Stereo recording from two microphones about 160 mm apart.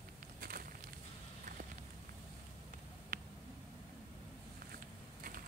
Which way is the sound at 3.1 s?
60° right (ahead or behind).